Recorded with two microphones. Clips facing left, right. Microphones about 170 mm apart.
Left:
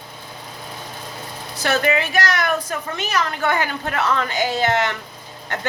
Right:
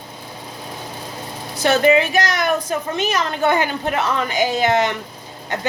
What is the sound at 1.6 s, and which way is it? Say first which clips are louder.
A woman's voice: right 5 dB; 20° right (ahead or behind).